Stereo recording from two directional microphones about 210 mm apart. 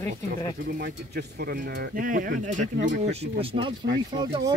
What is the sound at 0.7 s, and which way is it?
Speech, 45° right (ahead or behind).